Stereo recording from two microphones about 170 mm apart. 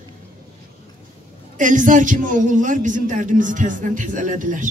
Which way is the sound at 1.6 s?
50° right (ahead or behind).